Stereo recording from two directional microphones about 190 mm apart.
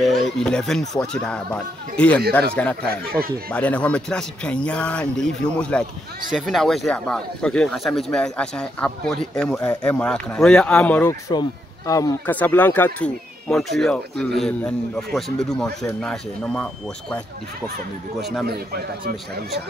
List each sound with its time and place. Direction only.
0.0 s speech: centre (ahead or behind)
18.5 s speech: 55° right (ahead or behind)